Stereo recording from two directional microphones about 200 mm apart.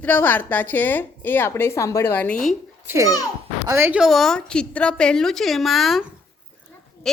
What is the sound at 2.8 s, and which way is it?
A child's voice, 15° right (ahead or behind).